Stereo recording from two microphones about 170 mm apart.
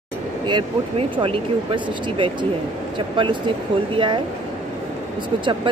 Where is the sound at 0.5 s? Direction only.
30° right (ahead or behind).